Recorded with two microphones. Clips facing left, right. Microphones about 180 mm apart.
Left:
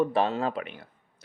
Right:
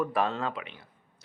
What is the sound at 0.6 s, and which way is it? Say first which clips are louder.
Speech: left 6 dB; 50° left (ahead or behind).